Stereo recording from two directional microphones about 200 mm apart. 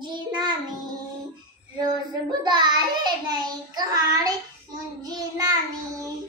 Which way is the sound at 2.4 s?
20° right (ahead or behind).